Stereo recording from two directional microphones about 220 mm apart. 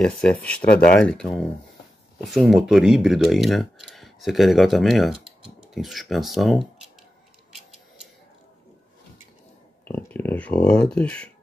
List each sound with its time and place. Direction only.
0.0 s speech: 5° left (ahead or behind)
9.8 s speech: 10° left (ahead or behind)